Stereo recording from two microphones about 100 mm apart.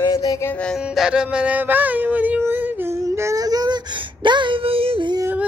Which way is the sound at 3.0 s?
30° right (ahead or behind).